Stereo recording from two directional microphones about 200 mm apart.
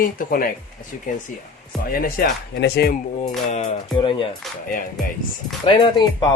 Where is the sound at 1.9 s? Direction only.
45° left (ahead or behind).